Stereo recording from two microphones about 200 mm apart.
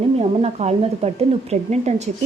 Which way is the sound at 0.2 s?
30° right (ahead or behind).